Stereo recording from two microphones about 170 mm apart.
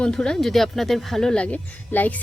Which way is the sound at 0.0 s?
5° left (ahead or behind).